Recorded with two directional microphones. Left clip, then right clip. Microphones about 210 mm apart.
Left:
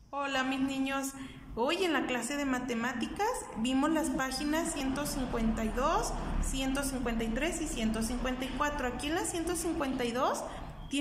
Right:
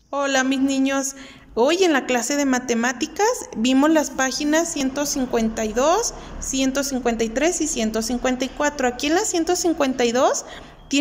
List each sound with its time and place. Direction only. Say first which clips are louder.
0.1 s a woman's voice: right 12 dB; 35° right (ahead or behind)